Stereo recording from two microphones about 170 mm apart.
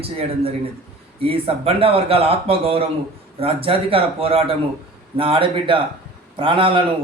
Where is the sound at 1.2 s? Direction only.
35° right (ahead or behind).